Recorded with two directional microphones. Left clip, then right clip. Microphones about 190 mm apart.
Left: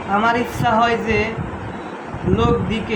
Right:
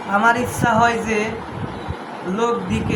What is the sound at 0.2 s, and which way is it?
Speech, 10° right (ahead or behind).